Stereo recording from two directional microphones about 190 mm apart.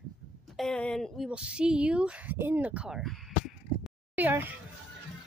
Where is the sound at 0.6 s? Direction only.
5° left (ahead or behind).